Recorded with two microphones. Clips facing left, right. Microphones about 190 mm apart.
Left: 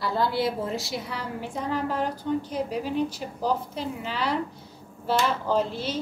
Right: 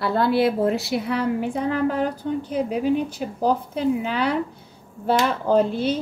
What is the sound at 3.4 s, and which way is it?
A woman's voice, 55° right (ahead or behind).